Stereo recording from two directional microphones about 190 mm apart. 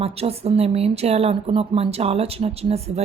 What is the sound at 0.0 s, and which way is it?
Speech, 30° right (ahead or behind).